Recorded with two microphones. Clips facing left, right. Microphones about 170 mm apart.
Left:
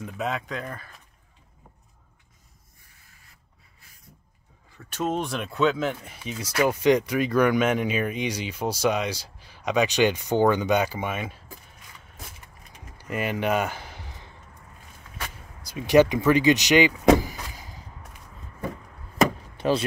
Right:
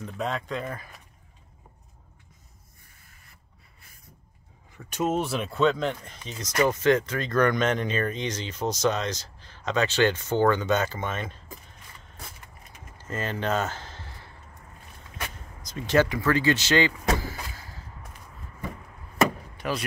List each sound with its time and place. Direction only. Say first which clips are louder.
0.0 s speech: left 1 dB; 5° left (ahead or behind)
4.7 s speech: right 1 dB; 10° right (ahead or behind); by 11.4 s 10° left (ahead or behind)
12.9 s a sound: left 3 dB; 15° left (ahead or behind)
15.6 s speech: left 5 dB; 10° left (ahead or behind)
19.5 s vehicle: left 7 dB; 30° left (ahead or behind)